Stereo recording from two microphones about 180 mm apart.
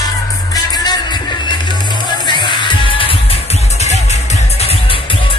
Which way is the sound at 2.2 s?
25° left (ahead or behind).